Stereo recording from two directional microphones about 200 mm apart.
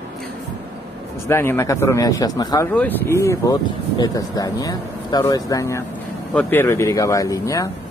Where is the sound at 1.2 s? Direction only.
10° left (ahead or behind).